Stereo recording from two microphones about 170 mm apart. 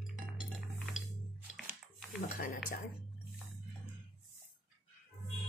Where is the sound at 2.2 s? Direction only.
60° left (ahead or behind).